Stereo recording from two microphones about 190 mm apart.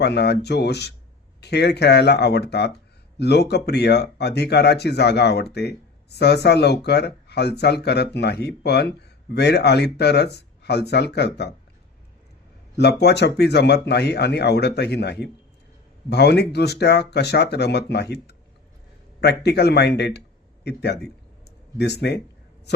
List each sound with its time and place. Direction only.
0.0 s speech: 60° left (ahead or behind)
12.7 s speech: 60° left (ahead or behind)
22.0 s speech: 65° left (ahead or behind)